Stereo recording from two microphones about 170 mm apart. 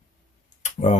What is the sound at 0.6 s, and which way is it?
Tick, 40° left (ahead or behind).